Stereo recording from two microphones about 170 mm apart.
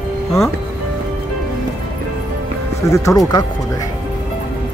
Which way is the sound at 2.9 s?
20° left (ahead or behind).